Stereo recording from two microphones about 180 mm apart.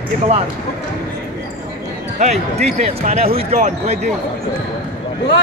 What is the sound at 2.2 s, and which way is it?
Speech, 35° right (ahead or behind).